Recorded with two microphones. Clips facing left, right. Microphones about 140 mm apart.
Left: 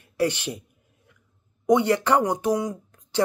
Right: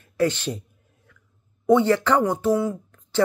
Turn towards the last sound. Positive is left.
turn(degrees=15)  # may be behind; listen again after turning